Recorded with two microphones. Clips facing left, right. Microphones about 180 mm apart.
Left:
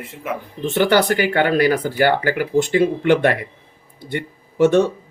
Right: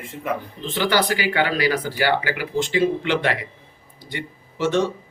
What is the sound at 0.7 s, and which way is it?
Speech, 55° left (ahead or behind).